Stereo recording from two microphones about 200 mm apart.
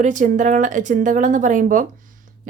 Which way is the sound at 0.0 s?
40° right (ahead or behind).